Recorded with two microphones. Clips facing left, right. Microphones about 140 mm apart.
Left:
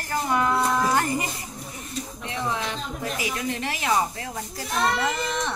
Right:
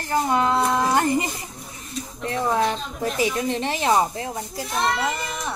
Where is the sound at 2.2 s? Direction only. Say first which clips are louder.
Right 8 dB; 45° right (ahead or behind).